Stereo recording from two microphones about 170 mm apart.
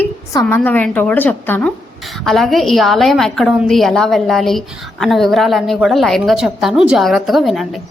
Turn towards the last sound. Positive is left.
turn(degrees=0)  # may be behind; listen again after turning